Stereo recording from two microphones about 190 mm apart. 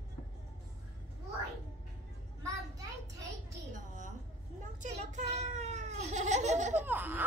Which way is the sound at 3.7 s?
40° right (ahead or behind).